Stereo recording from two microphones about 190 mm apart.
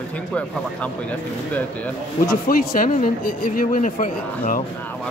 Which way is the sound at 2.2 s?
50° left (ahead or behind).